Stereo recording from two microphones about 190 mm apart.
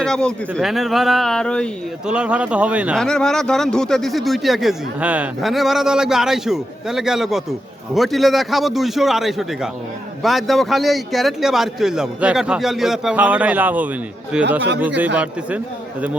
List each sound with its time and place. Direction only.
0.0 s speech: 5° left (ahead or behind)
2.1 s a man's voice: 5° right (ahead or behind)